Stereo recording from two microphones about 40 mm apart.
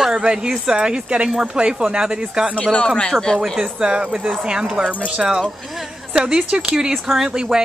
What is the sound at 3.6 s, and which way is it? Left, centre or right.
Speech, right.